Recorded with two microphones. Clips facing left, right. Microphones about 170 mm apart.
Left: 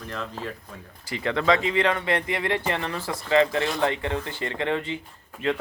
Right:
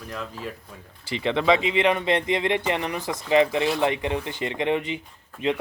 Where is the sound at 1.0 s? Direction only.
20° right (ahead or behind).